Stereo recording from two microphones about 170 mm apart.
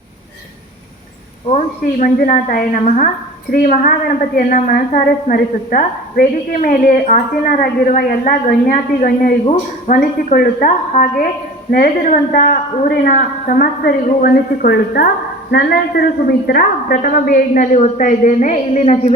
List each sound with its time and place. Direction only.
1.5 s a woman's voice: 50° left (ahead or behind)